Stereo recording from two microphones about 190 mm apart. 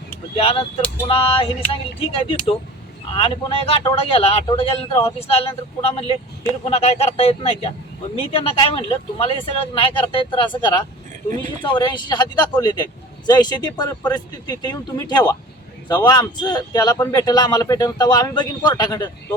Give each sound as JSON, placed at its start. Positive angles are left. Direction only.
{"t": 0.3, "sound": "speech", "side_deg": 30}